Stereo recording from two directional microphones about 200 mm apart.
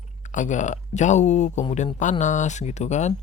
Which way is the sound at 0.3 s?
40° left (ahead or behind).